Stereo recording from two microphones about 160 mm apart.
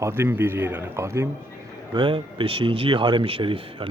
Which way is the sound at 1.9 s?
30° right (ahead or behind).